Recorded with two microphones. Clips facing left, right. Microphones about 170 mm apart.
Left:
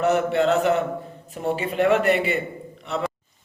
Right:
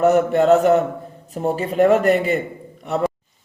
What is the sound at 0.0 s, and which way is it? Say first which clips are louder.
Mantra: right 5 dB; 45° right (ahead or behind).